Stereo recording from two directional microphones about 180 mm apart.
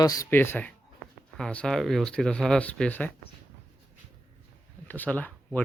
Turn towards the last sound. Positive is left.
turn(degrees=10)  # may be behind; listen again after turning